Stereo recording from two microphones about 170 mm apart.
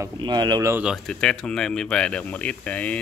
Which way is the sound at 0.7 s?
5° right (ahead or behind).